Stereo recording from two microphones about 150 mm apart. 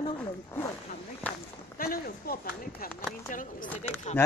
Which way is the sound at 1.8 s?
75° left (ahead or behind).